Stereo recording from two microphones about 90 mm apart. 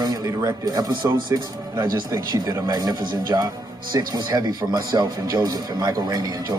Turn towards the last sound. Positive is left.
turn(degrees=-50)  # may be behind; listen again after turning